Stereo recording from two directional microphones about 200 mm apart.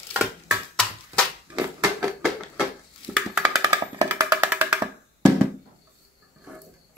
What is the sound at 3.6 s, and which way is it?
Music, 15° right (ahead or behind).